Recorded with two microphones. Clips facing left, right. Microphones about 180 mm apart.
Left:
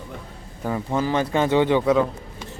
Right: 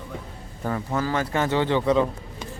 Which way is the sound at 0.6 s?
10° left (ahead or behind).